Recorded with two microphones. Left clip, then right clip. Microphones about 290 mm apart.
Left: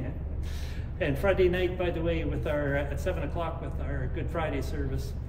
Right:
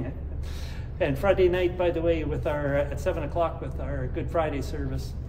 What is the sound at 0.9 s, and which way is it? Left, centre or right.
A man's voice, centre.